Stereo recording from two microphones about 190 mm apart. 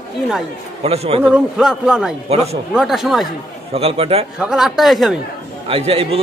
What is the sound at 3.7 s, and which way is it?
Speech, 30° right (ahead or behind).